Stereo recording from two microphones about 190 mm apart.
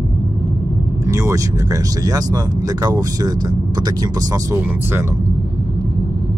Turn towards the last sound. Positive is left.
turn(degrees=-15)  # may be behind; listen again after turning